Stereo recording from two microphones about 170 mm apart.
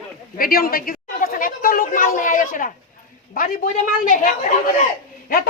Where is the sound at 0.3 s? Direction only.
60° left (ahead or behind).